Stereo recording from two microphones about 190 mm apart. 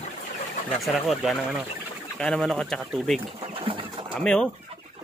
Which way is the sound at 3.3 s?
30° right (ahead or behind).